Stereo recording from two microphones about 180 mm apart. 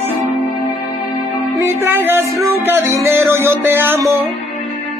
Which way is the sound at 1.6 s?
15° right (ahead or behind).